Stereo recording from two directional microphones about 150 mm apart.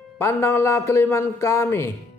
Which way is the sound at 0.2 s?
20° left (ahead or behind).